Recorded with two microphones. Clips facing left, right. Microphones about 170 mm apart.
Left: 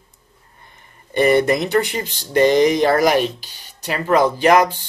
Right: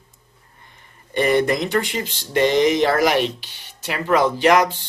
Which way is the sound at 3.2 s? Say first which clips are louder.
Left 2 dB; 40° left (ahead or behind).